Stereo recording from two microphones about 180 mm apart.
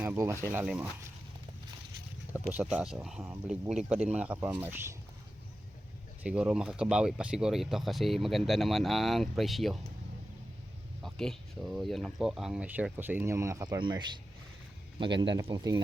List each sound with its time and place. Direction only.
0.0 s speech: 15° right (ahead or behind)
2.4 s speech: 5° right (ahead or behind)
6.2 s speech: 5° right (ahead or behind)
11.0 s speech: centre (ahead or behind); by 15.8 s 20° right (ahead or behind)